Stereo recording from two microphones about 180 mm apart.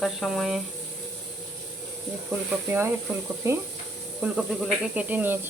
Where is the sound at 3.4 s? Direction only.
15° right (ahead or behind).